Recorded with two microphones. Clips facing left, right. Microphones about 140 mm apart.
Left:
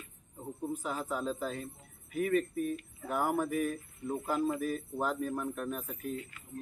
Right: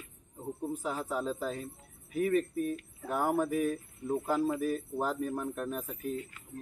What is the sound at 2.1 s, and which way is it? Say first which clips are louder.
Speech: right 1 dB; 35° right (ahead or behind).